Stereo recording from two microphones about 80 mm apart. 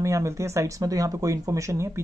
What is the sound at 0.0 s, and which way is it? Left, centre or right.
Speech, right.